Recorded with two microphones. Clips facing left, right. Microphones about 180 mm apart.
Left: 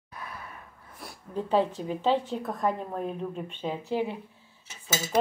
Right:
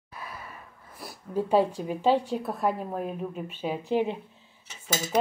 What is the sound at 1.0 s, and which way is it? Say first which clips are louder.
A woman's voice: right 4 dB; 10° right (ahead or behind).